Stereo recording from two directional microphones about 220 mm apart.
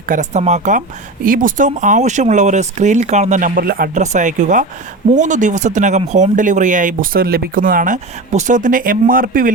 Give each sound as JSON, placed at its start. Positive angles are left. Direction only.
{"t": 0.1, "sound": "speech", "side_deg": -30}